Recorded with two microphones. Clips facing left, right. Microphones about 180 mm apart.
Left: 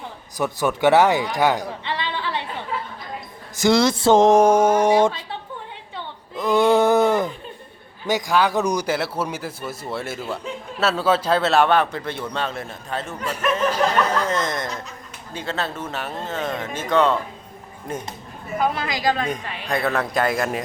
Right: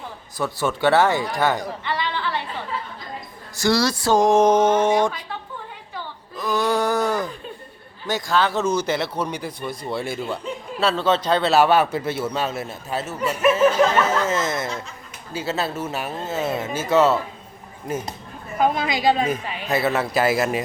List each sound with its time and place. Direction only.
0.3 s speech: 15° left (ahead or behind)
3.5 s speech: 20° left (ahead or behind)
6.0 s a sound: 25° left (ahead or behind)
8.0 s speech: 15° left (ahead or behind); by 17.2 s 5° right (ahead or behind)
19.2 s speech: 5° right (ahead or behind)